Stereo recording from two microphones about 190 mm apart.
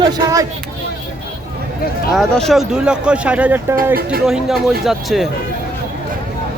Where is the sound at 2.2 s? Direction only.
Centre (ahead or behind).